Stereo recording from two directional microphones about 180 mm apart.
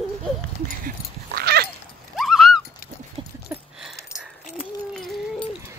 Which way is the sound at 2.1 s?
Centre (ahead or behind).